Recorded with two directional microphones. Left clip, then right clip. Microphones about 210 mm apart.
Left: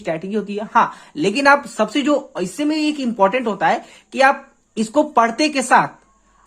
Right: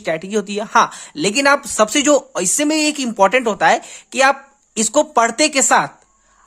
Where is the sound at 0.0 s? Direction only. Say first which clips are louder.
Right 3 dB; 20° right (ahead or behind).